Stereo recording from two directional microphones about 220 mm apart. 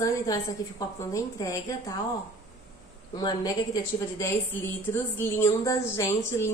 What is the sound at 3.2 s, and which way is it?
A woman's voice, 15° left (ahead or behind).